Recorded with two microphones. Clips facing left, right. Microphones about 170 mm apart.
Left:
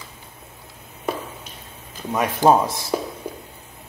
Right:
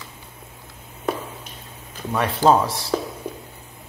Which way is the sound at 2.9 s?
15° left (ahead or behind).